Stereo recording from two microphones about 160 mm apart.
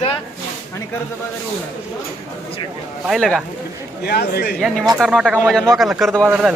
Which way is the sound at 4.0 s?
90° left.